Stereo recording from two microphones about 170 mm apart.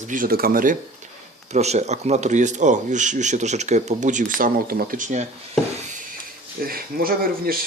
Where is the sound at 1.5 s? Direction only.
40° right (ahead or behind).